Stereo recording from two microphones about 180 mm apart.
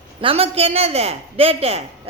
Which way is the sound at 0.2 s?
30° right (ahead or behind).